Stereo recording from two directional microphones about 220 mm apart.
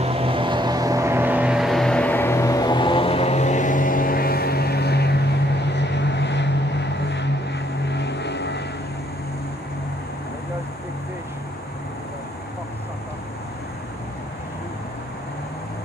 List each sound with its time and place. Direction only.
0.0 s vehicle: 25° right (ahead or behind); by 8.6 s 50° left (ahead or behind)